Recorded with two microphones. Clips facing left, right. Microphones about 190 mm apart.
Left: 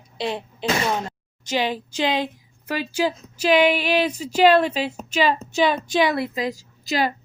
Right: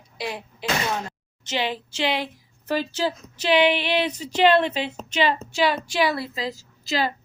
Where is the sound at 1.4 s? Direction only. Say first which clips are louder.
Left 3 dB; 15° left (ahead or behind).